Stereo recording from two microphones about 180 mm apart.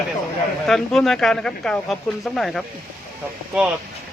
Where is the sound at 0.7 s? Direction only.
Centre (ahead or behind).